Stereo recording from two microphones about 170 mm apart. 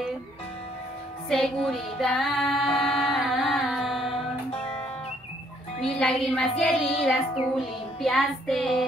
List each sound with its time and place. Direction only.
1.3 s female singing: 5° left (ahead or behind)
4.5 s music: 35° left (ahead or behind)
5.8 s music: 5° left (ahead or behind)